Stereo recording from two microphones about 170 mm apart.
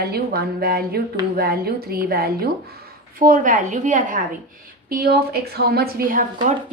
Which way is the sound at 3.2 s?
50° right (ahead or behind).